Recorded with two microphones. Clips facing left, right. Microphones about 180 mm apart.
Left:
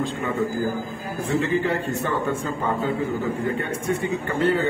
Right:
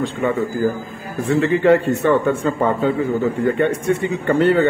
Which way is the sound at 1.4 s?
70° right (ahead or behind).